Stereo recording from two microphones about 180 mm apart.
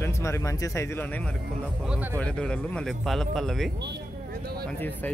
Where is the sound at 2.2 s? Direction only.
5° left (ahead or behind).